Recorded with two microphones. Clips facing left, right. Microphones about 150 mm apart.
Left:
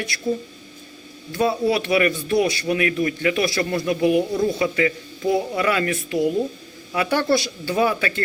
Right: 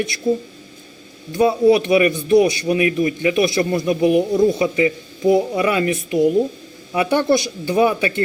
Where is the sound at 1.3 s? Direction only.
20° right (ahead or behind).